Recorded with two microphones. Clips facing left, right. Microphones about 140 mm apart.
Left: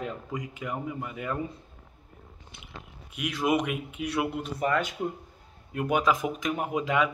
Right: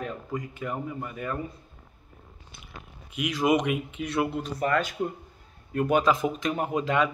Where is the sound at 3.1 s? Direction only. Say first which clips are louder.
Right 3 dB; centre (ahead or behind).